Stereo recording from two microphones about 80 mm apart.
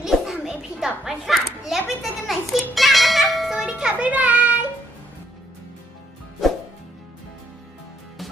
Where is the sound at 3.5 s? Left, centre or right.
Centre.